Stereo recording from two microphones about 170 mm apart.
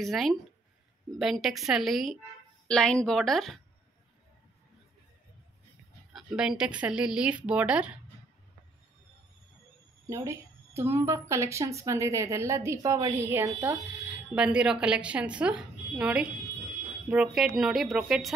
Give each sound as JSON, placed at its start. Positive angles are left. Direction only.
{"t": 0.0, "sound": "speech", "side_deg": 0}
{"t": 6.1, "sound": "speech", "side_deg": -5}
{"t": 10.0, "sound": "a woman's voice", "side_deg": -15}